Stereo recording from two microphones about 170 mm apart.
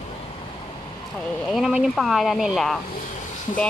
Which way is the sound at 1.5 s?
5° right (ahead or behind).